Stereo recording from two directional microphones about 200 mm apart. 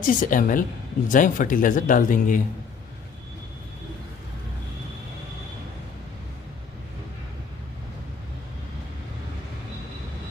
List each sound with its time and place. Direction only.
0.0 s speech: 40° left (ahead or behind)